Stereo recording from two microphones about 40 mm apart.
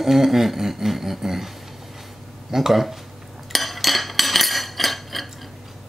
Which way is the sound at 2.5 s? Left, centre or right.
Centre.